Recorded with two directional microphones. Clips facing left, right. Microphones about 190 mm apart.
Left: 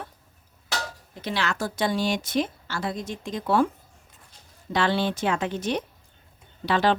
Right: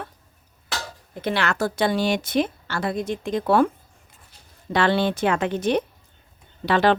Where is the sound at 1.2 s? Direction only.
60° right (ahead or behind).